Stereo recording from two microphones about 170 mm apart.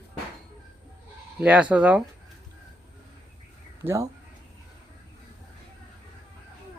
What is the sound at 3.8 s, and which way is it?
Speech, 20° right (ahead or behind).